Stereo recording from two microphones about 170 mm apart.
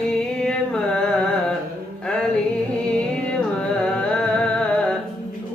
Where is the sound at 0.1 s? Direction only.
5° left (ahead or behind).